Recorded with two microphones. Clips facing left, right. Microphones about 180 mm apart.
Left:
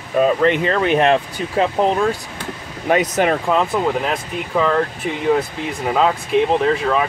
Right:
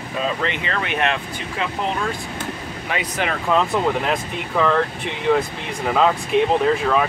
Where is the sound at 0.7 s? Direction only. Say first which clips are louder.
Left 8 dB; 35° left (ahead or behind).